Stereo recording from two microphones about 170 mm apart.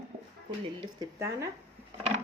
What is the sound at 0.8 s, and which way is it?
Speech, 20° right (ahead or behind).